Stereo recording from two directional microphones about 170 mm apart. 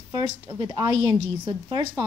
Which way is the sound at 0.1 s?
25° right (ahead or behind).